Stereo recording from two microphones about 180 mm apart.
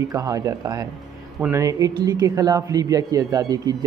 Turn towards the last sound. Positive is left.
turn(degrees=-20)  # may be behind; listen again after turning